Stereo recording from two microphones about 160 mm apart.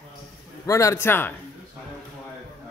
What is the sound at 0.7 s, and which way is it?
Speech, 20° left (ahead or behind).